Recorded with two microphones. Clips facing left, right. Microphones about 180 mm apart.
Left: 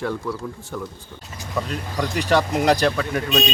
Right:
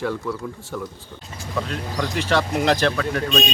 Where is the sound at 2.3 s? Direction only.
15° left (ahead or behind).